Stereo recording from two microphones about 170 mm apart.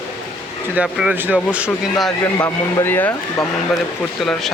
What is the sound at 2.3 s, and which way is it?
Speech, 15° left (ahead or behind).